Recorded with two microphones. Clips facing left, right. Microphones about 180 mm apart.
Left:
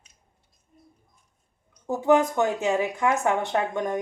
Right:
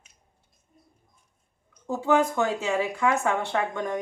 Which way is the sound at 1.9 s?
20° left (ahead or behind).